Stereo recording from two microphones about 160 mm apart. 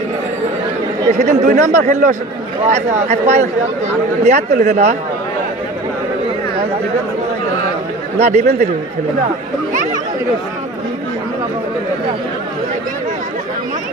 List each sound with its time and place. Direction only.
1.1 s speech: 50° right (ahead or behind)
8.2 s speech: 45° right (ahead or behind)